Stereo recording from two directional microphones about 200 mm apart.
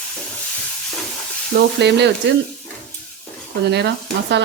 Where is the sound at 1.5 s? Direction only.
60° right (ahead or behind).